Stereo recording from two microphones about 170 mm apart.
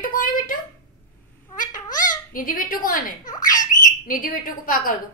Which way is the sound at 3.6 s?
55° left (ahead or behind).